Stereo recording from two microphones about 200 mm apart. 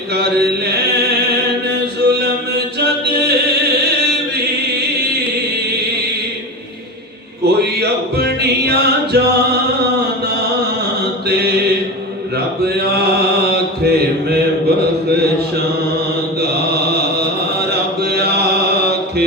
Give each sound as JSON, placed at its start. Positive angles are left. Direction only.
{"t": 0.1, "sound": "mantra", "side_deg": -55}
{"t": 2.0, "sound": "music", "side_deg": -55}
{"t": 7.4, "sound": "music", "side_deg": -55}
{"t": 12.6, "sound": "mantra", "side_deg": -55}
{"t": 16.4, "sound": "mantra", "side_deg": -55}